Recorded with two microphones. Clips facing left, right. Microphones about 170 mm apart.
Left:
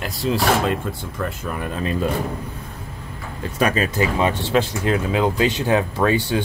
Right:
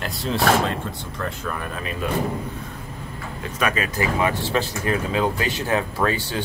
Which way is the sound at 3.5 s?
35° left (ahead or behind).